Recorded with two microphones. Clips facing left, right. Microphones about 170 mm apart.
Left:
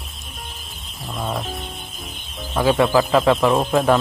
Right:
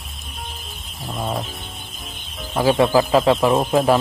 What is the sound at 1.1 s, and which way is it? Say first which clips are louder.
Mechanisms: right 1 dB; 15° right (ahead or behind).